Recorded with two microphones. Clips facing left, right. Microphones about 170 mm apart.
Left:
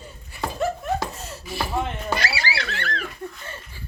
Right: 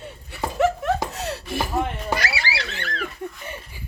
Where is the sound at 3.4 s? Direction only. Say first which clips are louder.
Right 3 dB; 15° right (ahead or behind).